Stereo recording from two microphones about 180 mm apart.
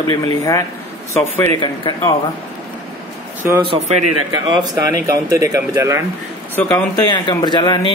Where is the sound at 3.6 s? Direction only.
40° right (ahead or behind).